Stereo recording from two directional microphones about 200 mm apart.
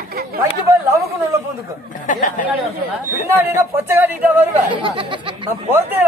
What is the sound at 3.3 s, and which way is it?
Speech, 10° right (ahead or behind).